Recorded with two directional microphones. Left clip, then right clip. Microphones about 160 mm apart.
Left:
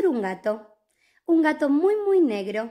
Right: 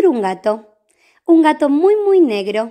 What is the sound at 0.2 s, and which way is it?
A woman's voice, 20° right (ahead or behind).